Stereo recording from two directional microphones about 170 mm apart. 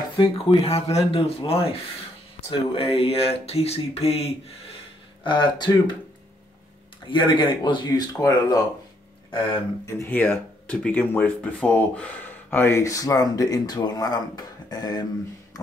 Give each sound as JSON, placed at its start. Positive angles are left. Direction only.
{"t": 0.2, "sound": "speech", "side_deg": 35}
{"t": 7.1, "sound": "speech", "side_deg": 30}
{"t": 9.8, "sound": "speech", "side_deg": 15}